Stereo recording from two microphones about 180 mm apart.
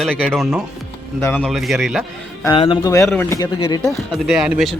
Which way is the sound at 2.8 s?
15° left (ahead or behind).